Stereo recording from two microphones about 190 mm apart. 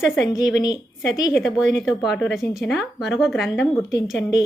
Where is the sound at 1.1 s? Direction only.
20° left (ahead or behind).